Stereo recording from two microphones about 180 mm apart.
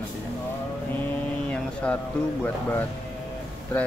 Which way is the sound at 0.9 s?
10° left (ahead or behind).